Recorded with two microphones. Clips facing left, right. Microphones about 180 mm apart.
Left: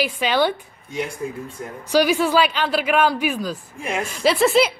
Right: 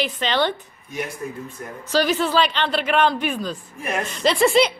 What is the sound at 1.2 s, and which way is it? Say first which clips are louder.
Speech: left 3 dB; 25° left (ahead or behind).